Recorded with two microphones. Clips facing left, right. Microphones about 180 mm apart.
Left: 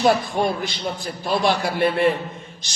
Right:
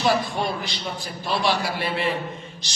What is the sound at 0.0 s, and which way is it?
A man's voice, 50° left (ahead or behind).